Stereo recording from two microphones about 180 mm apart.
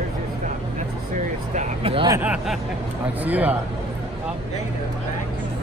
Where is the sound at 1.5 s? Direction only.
30° right (ahead or behind).